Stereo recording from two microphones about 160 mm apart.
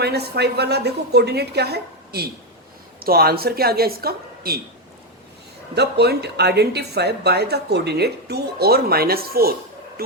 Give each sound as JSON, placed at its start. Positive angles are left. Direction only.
{"t": 0.0, "sound": "a woman's voice", "side_deg": -90}
{"t": 3.0, "sound": "a woman's voice", "side_deg": -75}
{"t": 5.7, "sound": "a woman's voice", "side_deg": -90}